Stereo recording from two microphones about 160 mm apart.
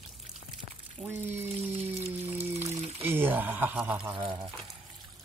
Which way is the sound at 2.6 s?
45° right (ahead or behind).